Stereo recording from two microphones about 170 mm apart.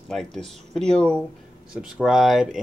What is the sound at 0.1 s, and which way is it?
Speech, 5° left (ahead or behind).